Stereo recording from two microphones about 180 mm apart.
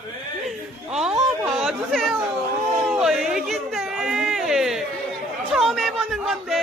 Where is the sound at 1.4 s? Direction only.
Centre (ahead or behind).